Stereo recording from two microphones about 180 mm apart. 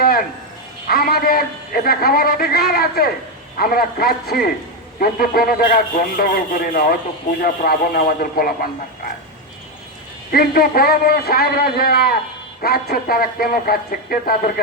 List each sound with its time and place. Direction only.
0.9 s a man's voice: 55° left (ahead or behind)
10.3 s a man's voice: 55° left (ahead or behind)